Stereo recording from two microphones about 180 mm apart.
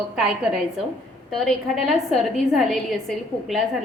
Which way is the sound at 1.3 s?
Centre (ahead or behind).